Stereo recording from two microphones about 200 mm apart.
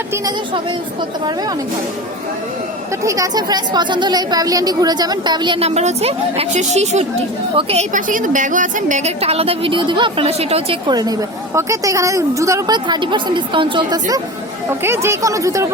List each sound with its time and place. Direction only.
0.1 s a woman's voice: 20° right (ahead or behind)
3.0 s a woman's voice: 15° right (ahead or behind)